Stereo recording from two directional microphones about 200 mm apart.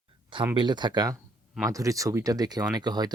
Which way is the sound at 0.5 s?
20° right (ahead or behind).